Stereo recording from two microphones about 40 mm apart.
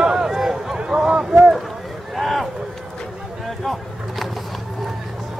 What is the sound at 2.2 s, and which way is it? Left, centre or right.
Run, centre.